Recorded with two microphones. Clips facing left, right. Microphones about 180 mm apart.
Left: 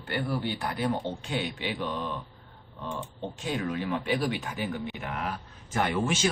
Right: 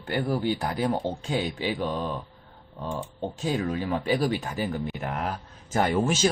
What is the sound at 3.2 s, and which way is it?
Speech, 40° right (ahead or behind).